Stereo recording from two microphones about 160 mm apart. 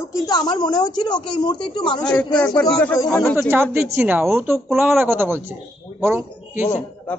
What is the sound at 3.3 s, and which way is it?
Speech, 15° right (ahead or behind).